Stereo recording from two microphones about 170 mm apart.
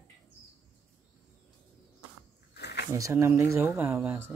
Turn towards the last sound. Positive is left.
turn(degrees=-10)  # may be behind; listen again after turning